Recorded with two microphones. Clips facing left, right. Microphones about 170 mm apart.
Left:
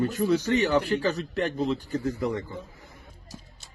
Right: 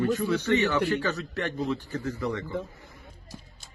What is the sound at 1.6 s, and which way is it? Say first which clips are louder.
Speech: left 3 dB; 15° left (ahead or behind).